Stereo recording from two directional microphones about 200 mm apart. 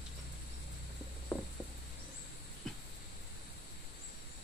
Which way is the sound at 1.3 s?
10° left (ahead or behind).